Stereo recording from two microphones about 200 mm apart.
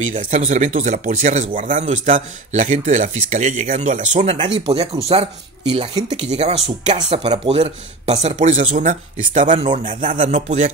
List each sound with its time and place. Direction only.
0.0 s speech: 35° right (ahead or behind)